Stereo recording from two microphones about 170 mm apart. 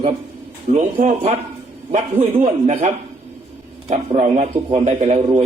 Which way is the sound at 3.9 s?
40° right (ahead or behind).